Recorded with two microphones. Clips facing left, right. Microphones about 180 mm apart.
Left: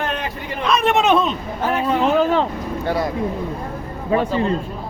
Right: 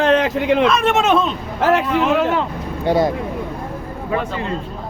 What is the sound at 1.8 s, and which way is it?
Speech, 30° left (ahead or behind).